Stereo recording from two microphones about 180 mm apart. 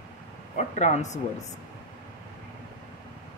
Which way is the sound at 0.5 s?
40° left (ahead or behind).